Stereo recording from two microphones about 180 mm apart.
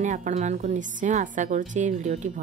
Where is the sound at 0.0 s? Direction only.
45° right (ahead or behind).